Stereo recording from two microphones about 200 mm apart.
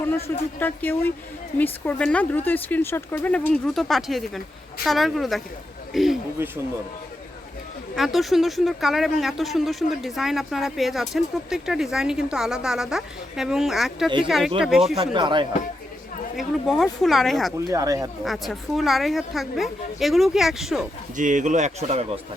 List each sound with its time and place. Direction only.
0.6 s speech: 10° left (ahead or behind)
7.9 s speech: centre (ahead or behind)
14.9 s speech: 25° right (ahead or behind)
16.4 s speech: centre (ahead or behind)
17.7 s speech: 15° right (ahead or behind)
18.3 s speech: centre (ahead or behind)
21.2 s speech: 40° right (ahead or behind)